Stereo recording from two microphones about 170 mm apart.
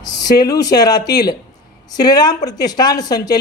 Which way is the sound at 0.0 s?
25° left (ahead or behind).